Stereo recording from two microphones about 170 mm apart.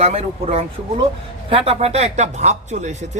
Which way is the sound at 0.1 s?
35° right (ahead or behind).